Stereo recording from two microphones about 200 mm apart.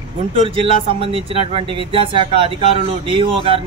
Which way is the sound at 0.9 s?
25° right (ahead or behind).